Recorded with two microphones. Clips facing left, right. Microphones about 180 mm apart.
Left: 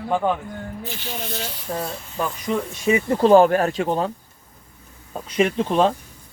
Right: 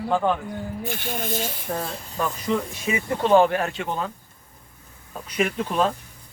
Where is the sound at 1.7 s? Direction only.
Centre (ahead or behind).